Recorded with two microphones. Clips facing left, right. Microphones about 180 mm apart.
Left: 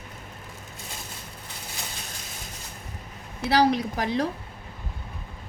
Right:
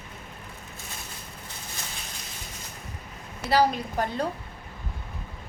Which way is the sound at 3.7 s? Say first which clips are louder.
Left 3 dB; 90° left.